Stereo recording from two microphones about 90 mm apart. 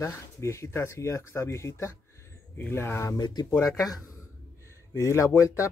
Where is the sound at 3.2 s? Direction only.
50° left (ahead or behind); by 5.7 s 35° left (ahead or behind).